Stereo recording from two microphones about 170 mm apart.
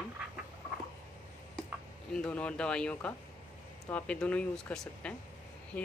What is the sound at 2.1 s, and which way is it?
Speech, 5° left (ahead or behind).